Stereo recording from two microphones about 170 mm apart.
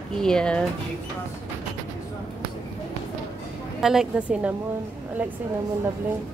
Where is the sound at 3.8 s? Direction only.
Centre (ahead or behind).